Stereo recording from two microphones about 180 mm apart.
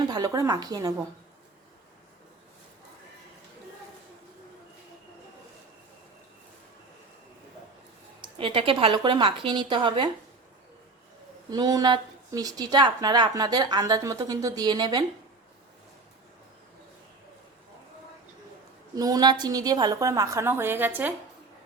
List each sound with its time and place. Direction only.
0.0 s a woman's voice: 20° right (ahead or behind)
8.2 s a woman's voice: 30° right (ahead or behind)
11.5 s a woman's voice: 20° right (ahead or behind)
18.9 s a woman's voice: 20° right (ahead or behind)